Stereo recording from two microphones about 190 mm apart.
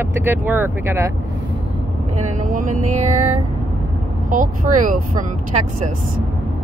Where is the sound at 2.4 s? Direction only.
45° right (ahead or behind).